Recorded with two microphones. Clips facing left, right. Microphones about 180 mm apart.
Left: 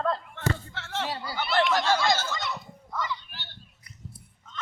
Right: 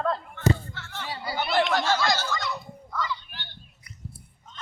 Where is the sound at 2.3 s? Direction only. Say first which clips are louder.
Right 2 dB; 25° left (ahead or behind).